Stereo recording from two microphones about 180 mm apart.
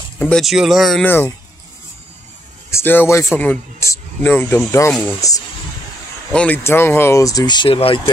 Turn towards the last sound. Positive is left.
turn(degrees=30)  # may be behind; listen again after turning